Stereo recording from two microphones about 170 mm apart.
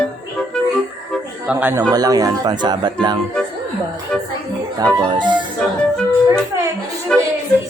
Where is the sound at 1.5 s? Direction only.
10° right (ahead or behind).